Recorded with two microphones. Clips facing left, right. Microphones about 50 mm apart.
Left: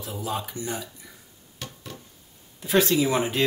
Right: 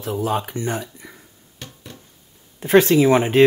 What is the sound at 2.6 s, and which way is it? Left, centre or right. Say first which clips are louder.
Speech: right 8 dB; right.